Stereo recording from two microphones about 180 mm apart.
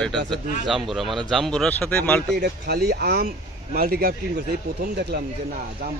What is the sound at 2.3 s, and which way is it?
Speech, 65° right (ahead or behind).